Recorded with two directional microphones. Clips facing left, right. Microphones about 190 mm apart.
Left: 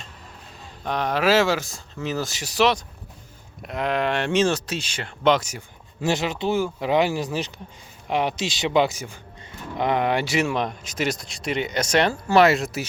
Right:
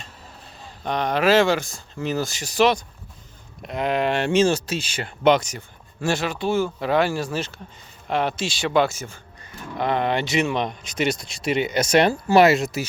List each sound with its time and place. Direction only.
0.9 s speech: centre (ahead or behind)
6.0 s a man's voice: 20° left (ahead or behind); by 12.8 s centre (ahead or behind)